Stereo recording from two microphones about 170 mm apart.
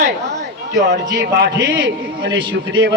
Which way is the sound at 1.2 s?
85° right.